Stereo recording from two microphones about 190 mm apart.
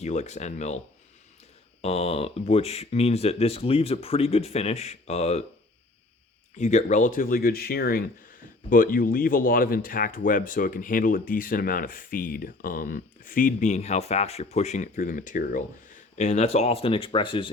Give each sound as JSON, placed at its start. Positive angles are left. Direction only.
{"t": 0.0, "sound": "speech", "side_deg": 35}
{"t": 1.8, "sound": "speech", "side_deg": 35}
{"t": 6.6, "sound": "speech", "side_deg": 40}
{"t": 16.1, "sound": "speech", "side_deg": 35}